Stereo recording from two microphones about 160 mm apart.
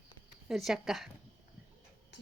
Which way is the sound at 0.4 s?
Centre (ahead or behind).